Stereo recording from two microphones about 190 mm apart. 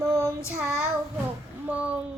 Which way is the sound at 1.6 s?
5° right (ahead or behind).